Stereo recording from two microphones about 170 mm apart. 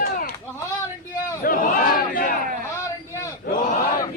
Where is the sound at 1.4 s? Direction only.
55° left (ahead or behind).